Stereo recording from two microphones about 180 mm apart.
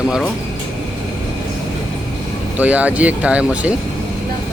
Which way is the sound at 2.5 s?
10° right (ahead or behind).